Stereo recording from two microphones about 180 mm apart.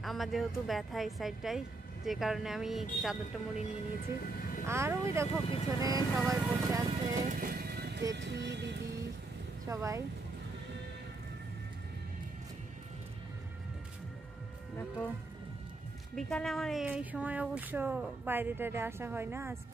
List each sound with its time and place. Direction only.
0.0 s a woman's voice: centre (ahead or behind)
4.6 s speech: 15° right (ahead or behind)
7.3 s music: 55° right (ahead or behind)
8.1 s speech: 75° right (ahead or behind)
9.7 s speech: 15° right (ahead or behind)
16.2 s a woman's voice: 5° left (ahead or behind)
16.8 s speech: 10° right (ahead or behind)